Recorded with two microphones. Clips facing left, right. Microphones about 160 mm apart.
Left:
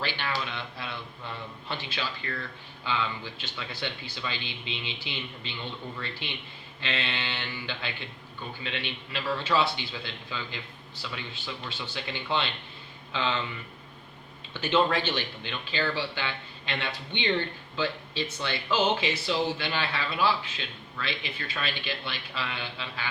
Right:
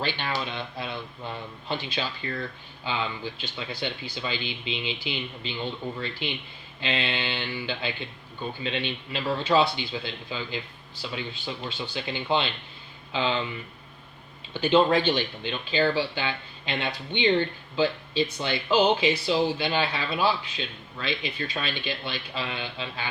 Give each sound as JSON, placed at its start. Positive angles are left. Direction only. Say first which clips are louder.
{"t": 0.0, "sound": "a man's voice", "louder": "right 3 dB", "side_deg": -20}
{"t": 14.5, "sound": "a man's voice", "louder": "right 5 dB", "side_deg": -15}